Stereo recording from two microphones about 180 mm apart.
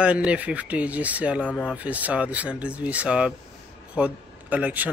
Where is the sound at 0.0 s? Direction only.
5° right (ahead or behind).